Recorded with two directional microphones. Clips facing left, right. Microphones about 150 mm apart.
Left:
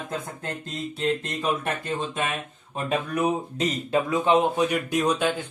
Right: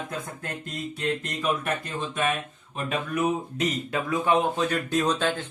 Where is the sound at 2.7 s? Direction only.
35° left (ahead or behind).